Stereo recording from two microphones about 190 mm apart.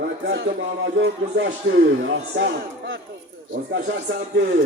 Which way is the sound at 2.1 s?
70° right (ahead or behind).